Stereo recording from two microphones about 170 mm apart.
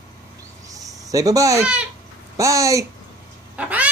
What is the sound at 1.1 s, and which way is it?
Speech, 20° right (ahead or behind).